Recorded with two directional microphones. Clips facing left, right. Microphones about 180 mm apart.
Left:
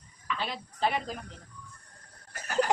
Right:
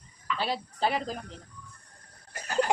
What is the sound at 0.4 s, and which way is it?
Speech, 35° right (ahead or behind).